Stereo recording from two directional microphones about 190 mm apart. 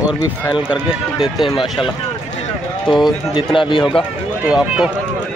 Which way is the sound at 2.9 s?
Centre (ahead or behind).